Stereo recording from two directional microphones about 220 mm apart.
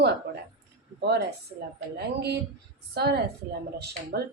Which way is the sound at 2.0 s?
50° right (ahead or behind).